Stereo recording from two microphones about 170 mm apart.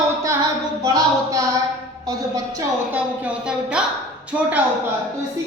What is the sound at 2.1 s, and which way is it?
Speech, 20° right (ahead or behind).